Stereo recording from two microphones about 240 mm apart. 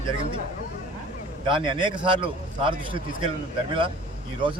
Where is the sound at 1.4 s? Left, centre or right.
Centre.